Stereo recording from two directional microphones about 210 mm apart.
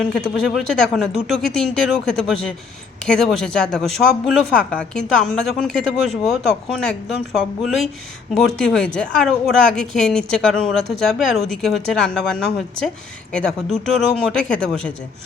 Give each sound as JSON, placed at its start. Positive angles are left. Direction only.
{"t": 0.0, "sound": "speech", "side_deg": 5}